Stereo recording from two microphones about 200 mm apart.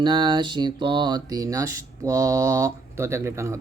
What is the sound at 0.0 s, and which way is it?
Mantra, 20° right (ahead or behind).